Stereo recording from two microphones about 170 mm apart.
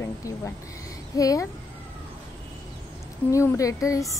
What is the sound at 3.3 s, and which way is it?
Speech, 20° left (ahead or behind).